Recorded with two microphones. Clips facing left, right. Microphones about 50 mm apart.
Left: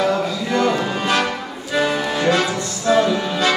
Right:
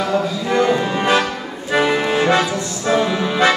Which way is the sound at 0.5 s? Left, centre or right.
Right.